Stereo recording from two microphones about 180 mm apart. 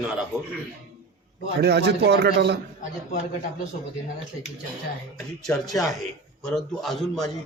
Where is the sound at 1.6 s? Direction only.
65° right (ahead or behind).